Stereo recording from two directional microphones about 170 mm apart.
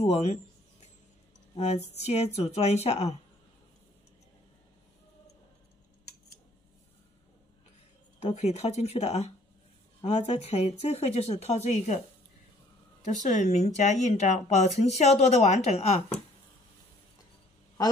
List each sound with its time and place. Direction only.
0.0 s speech: 40° left (ahead or behind)
2.0 s speech: 40° left (ahead or behind)
8.2 s speech: 40° left (ahead or behind)
13.0 s speech: 45° left (ahead or behind)